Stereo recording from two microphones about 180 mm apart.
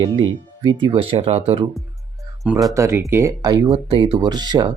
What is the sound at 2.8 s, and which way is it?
Speech, 15° right (ahead or behind).